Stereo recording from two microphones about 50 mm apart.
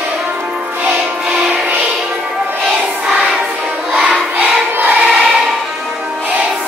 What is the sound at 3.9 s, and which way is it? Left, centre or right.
Choir, right.